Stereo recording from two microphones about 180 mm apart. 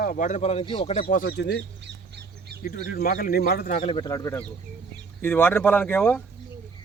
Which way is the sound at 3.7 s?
30° left (ahead or behind).